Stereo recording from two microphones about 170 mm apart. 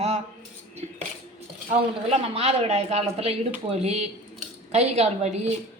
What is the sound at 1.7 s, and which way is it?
Speech, 40° right (ahead or behind).